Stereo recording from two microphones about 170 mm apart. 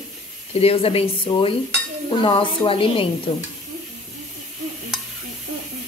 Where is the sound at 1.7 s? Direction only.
90° right.